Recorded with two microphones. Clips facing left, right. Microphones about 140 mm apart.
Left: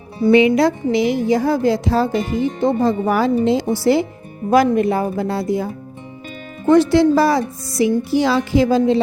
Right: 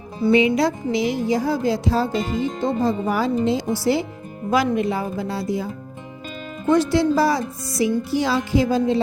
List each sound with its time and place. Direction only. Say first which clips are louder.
0.3 s speech: left 4 dB; 65° left (ahead or behind)
4.5 s speech: left 6 dB; 50° left (ahead or behind)
6.7 s speech: left 5 dB; 65° left (ahead or behind)